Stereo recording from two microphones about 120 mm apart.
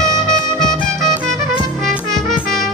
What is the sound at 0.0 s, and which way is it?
Music, 5° left (ahead or behind).